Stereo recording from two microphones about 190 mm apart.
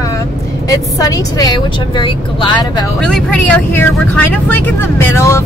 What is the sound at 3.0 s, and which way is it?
Speech, 5° left (ahead or behind).